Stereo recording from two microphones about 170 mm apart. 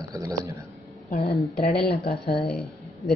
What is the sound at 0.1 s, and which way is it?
Speech, 20° right (ahead or behind).